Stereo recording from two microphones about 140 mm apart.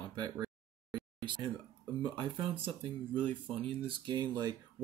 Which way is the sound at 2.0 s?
35° right (ahead or behind).